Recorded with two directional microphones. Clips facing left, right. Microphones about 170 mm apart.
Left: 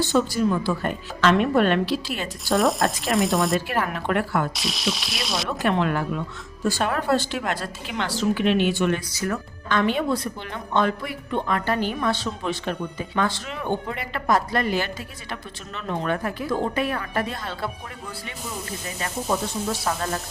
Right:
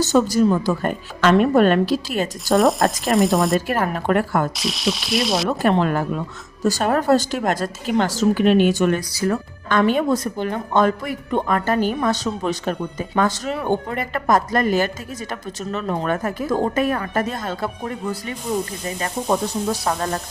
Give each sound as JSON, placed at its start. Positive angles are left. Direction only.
{"t": 0.0, "sound": "speech", "side_deg": -45}
{"t": 2.6, "sound": "speech", "side_deg": 0}
{"t": 3.7, "sound": "speech", "side_deg": -45}
{"t": 4.5, "sound": "speech", "side_deg": 0}
{"t": 5.5, "sound": "speech", "side_deg": -40}
{"t": 9.6, "sound": "speech", "side_deg": -50}